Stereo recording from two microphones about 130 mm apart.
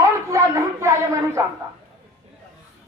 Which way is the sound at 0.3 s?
25° right (ahead or behind).